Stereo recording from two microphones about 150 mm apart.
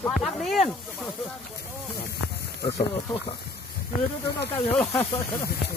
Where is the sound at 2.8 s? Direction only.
40° left (ahead or behind).